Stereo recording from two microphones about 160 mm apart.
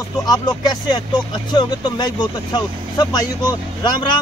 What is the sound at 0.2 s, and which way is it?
Speech, 25° left (ahead or behind).